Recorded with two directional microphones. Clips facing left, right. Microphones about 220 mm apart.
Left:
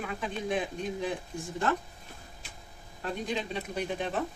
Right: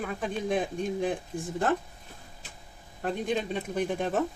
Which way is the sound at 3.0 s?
50° right (ahead or behind).